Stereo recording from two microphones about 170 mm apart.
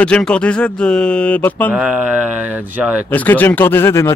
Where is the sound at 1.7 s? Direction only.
10° right (ahead or behind).